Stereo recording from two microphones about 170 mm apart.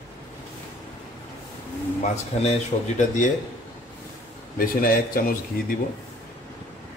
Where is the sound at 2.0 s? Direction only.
40° left (ahead or behind).